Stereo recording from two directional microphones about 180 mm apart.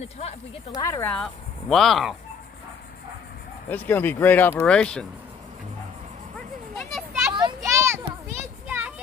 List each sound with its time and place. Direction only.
0.0 s speech: 35° left (ahead or behind)
0.8 s speech: 10° left (ahead or behind)
3.6 s speech: 10° left (ahead or behind)
7.3 s a sound: 20° right (ahead or behind)